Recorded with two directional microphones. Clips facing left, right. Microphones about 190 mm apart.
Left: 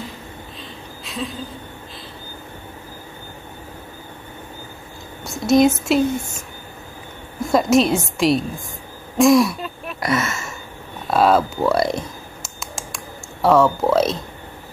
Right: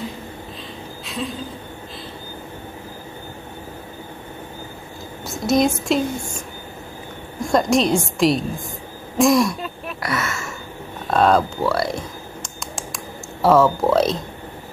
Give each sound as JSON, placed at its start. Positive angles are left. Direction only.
{"t": 1.0, "sound": "a sound", "side_deg": 0}
{"t": 5.2, "sound": "a woman's voice", "side_deg": 0}
{"t": 10.0, "sound": "speech", "side_deg": 20}
{"t": 11.1, "sound": "a woman's voice", "side_deg": 5}
{"t": 11.6, "sound": "speech", "side_deg": 20}
{"t": 12.4, "sound": "a sound", "side_deg": 0}